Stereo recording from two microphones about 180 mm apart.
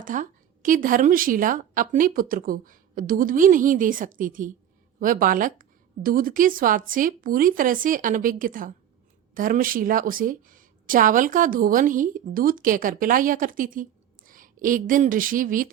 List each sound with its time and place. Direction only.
0.0 s a woman's voice: 45° right (ahead or behind)